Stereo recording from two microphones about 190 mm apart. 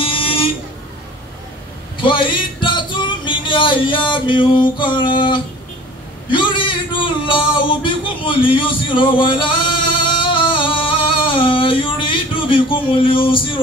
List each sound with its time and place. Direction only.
0.0 s buzzer: 30° left (ahead or behind)
2.0 s music: 25° left (ahead or behind)
6.3 s a sound: 25° left (ahead or behind)